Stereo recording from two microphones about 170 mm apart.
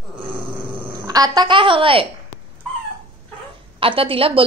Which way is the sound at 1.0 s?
20° right (ahead or behind).